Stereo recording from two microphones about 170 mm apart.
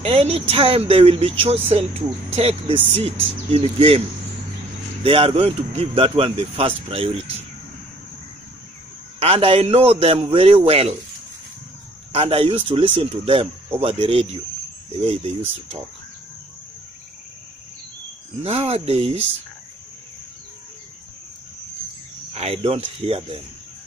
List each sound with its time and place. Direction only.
0.0 s speech: 35° right (ahead or behind)
5.0 s speech: 30° right (ahead or behind)
9.2 s speech: 35° right (ahead or behind)
12.1 s speech: 35° right (ahead or behind)
18.4 s speech: 35° right (ahead or behind)
22.3 s speech: 35° right (ahead or behind)